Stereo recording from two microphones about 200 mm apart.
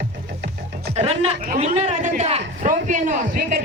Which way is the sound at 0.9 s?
30° right (ahead or behind).